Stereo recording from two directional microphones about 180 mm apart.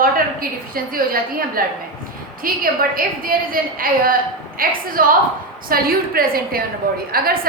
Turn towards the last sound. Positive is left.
turn(degrees=-55)  # may be behind; listen again after turning